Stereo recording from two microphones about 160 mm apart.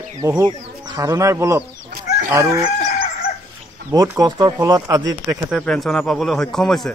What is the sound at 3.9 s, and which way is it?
Speech, 20° right (ahead or behind).